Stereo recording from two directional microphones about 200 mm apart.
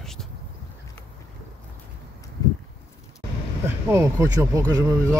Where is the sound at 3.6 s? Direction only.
15° right (ahead or behind).